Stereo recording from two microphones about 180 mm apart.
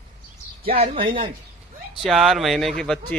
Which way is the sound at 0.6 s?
35° right (ahead or behind).